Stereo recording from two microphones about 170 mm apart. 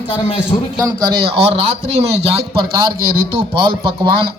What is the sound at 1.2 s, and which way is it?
Speech, 35° right (ahead or behind).